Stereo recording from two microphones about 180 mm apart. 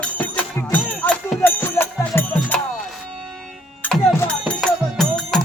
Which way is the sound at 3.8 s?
5° left (ahead or behind).